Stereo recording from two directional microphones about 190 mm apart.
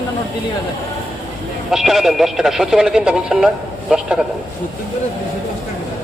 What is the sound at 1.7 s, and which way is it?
Speech, centre (ahead or behind).